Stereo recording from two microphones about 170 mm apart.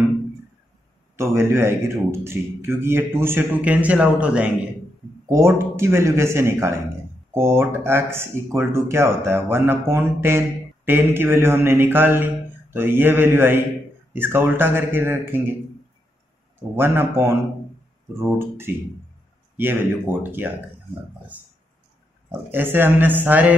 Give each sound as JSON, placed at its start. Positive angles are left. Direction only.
{"t": 1.1, "sound": "a man's voice", "side_deg": -15}
{"t": 16.7, "sound": "a man's voice", "side_deg": -15}
{"t": 22.5, "sound": "a man's voice", "side_deg": -10}